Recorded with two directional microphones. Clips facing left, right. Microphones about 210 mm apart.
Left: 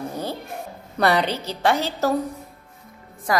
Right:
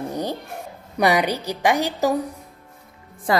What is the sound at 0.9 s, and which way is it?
A woman's voice, 15° right (ahead or behind).